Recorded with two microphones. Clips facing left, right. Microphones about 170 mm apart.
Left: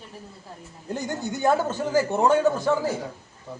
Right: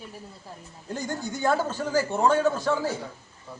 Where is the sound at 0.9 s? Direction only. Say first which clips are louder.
Left 2 dB; 20° left (ahead or behind).